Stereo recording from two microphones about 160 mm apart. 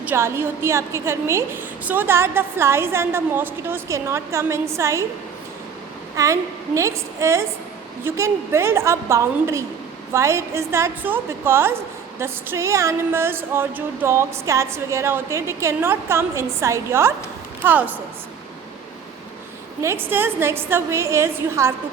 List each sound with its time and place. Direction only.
0.0 s a woman's voice: 15° right (ahead or behind)
6.1 s a woman's voice: 20° right (ahead or behind)
19.8 s a woman's voice: 15° right (ahead or behind)